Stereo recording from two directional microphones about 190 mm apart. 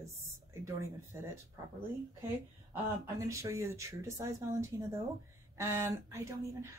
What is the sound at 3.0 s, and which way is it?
Speech, 15° right (ahead or behind).